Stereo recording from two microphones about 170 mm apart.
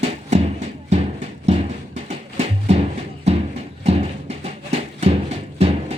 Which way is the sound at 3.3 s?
40° right (ahead or behind).